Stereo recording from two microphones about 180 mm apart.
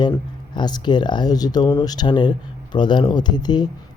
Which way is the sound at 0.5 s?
25° left (ahead or behind).